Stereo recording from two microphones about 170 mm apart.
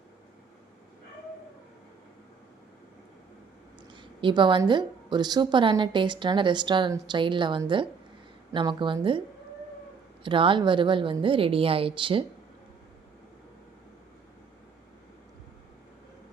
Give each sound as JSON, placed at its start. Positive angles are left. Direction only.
{"t": 3.9, "sound": "a woman's voice", "side_deg": -30}
{"t": 10.2, "sound": "a woman's voice", "side_deg": -30}